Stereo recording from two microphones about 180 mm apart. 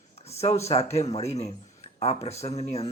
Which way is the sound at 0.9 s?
35° left (ahead or behind).